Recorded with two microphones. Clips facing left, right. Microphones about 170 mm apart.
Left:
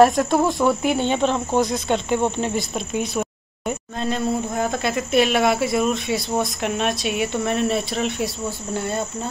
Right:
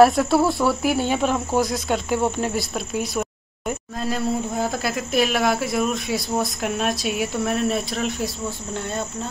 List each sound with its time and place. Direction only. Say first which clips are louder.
0.0 s speech: even; 5° right (ahead or behind)
0.5 s cricket: left 2 dB; 15° left (ahead or behind)
0.8 s speech: left 1 dB; 5° right (ahead or behind)